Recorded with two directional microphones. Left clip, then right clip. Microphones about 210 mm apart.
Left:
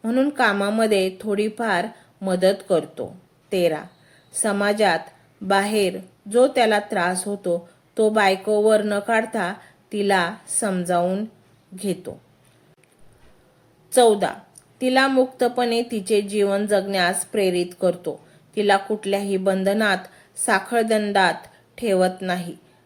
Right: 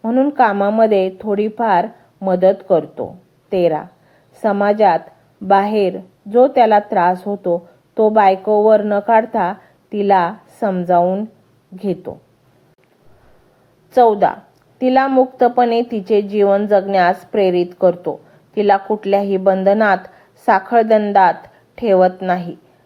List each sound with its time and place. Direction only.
0.0 s a woman's voice: 15° left (ahead or behind)
13.9 s a woman's voice: 10° left (ahead or behind)